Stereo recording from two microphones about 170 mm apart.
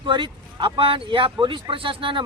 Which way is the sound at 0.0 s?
30° right (ahead or behind).